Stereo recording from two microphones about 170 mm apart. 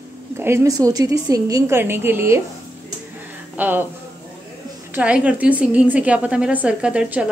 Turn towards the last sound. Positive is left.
turn(degrees=-5)  # may be behind; listen again after turning